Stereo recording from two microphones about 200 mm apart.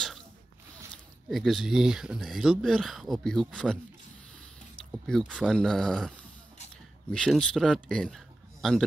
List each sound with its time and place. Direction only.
1.3 s speech: centre (ahead or behind)
5.0 s a man's voice: centre (ahead or behind)